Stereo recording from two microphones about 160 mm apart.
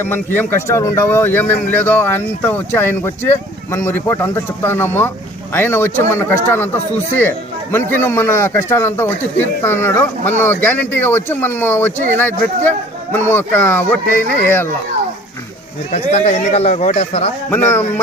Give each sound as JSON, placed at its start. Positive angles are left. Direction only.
{"t": 0.0, "sound": "a man's voice", "side_deg": 10}
{"t": 15.9, "sound": "speech", "side_deg": 45}
{"t": 17.5, "sound": "a man's voice", "side_deg": 15}